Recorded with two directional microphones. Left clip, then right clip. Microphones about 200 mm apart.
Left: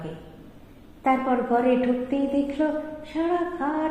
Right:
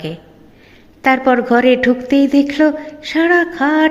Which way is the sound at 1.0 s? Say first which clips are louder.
Right 10 dB; 40° right (ahead or behind).